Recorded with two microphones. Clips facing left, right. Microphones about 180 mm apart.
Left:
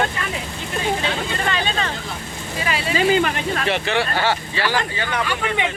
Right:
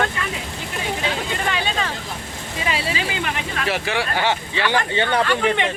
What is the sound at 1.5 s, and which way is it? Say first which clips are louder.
Vehicle: left 1 dB; 10° right (ahead or behind).